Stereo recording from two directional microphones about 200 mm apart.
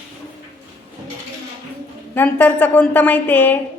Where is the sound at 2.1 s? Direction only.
10° left (ahead or behind).